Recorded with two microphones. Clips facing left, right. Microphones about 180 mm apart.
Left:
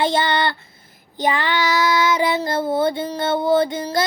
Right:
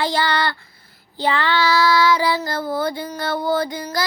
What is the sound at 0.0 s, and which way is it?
Child singing, 20° left (ahead or behind).